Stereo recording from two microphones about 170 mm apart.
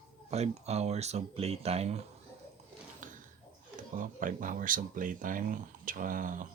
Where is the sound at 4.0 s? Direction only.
50° right (ahead or behind).